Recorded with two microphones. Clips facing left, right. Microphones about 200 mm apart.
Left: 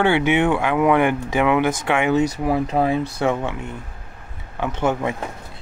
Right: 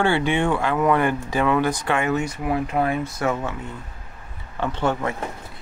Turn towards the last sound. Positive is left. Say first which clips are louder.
# left 2 dB
turn(degrees=15)  # may be behind; listen again after turning